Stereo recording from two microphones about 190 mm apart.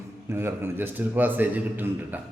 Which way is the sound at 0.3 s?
10° right (ahead or behind).